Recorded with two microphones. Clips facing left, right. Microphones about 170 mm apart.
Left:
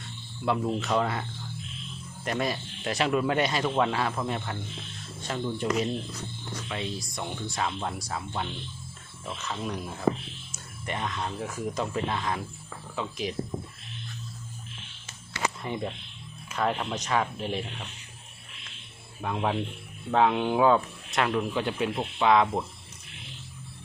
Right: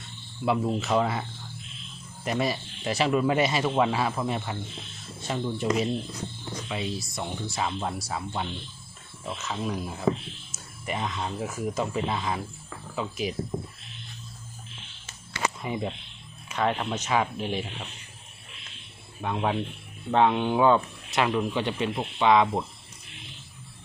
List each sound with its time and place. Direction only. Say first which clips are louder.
0.4 s speech: right 2 dB; 5° right (ahead or behind)
2.2 s speech: right 2 dB; 5° right (ahead or behind)
15.6 s speech: right 2 dB; 5° right (ahead or behind)
19.2 s speech: right 1 dB; centre (ahead or behind)